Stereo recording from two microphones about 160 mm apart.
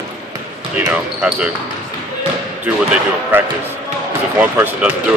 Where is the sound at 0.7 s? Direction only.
10° right (ahead or behind).